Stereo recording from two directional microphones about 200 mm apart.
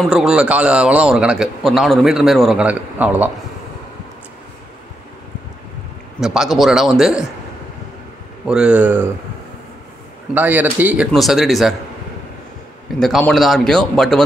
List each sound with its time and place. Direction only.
0.0 s a man's voice: centre (ahead or behind)
6.2 s a man's voice: centre (ahead or behind)
8.5 s a man's voice: 5° right (ahead or behind)
10.3 s a man's voice: 10° right (ahead or behind)
13.0 s a man's voice: centre (ahead or behind)